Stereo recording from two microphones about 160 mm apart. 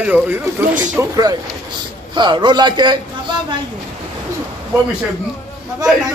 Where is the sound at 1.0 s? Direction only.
25° right (ahead or behind).